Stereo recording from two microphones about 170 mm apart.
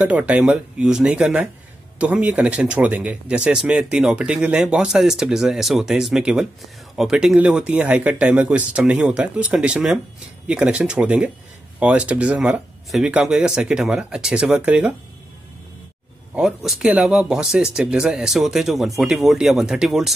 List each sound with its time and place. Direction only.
0.0 s speech: 10° right (ahead or behind)
16.3 s speech: 5° right (ahead or behind)